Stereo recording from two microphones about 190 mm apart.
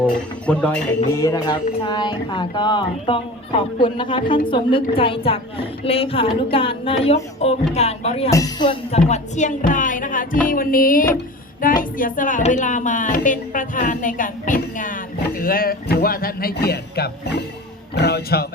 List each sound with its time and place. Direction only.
0.0 s speech: 5° left (ahead or behind)
1.2 s a woman's voice: 20° left (ahead or behind)
8.3 s speech: 20° left (ahead or behind); by 18.4 s 55° left (ahead or behind)